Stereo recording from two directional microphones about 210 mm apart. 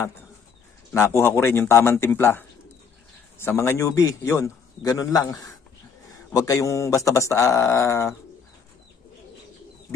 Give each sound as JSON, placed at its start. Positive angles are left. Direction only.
{"t": 0.9, "sound": "a man's voice", "side_deg": 10}